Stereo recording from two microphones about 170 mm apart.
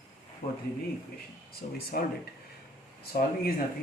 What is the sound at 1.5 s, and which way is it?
Speech, 65° left (ahead or behind).